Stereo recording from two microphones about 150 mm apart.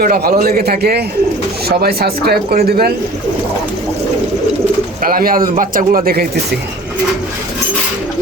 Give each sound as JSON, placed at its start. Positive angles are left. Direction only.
{"t": 0.0, "sound": "a man's voice", "side_deg": -85}
{"t": 5.0, "sound": "a man's voice", "side_deg": -75}